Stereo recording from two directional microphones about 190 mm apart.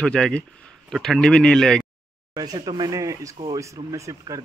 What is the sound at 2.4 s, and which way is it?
Speech, 20° right (ahead or behind).